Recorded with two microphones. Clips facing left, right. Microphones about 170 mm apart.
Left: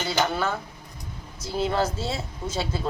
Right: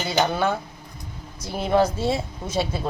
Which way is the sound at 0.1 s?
15° right (ahead or behind).